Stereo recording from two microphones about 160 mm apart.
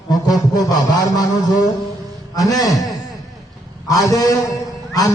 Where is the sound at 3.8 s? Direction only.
20° left (ahead or behind).